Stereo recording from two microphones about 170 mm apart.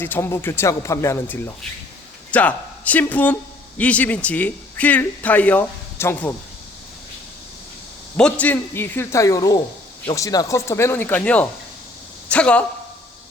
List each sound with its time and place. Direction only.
0.0 s speech: 15° left (ahead or behind)
8.1 s speech: 10° left (ahead or behind)